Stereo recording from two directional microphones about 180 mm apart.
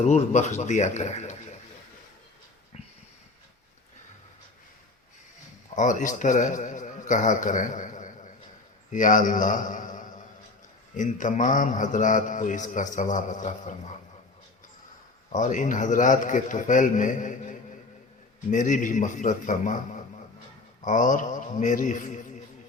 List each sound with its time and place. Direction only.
0.0 s speech: 40° left (ahead or behind)
5.7 s a man's voice: 45° left (ahead or behind)
15.3 s a man's voice: 45° left (ahead or behind)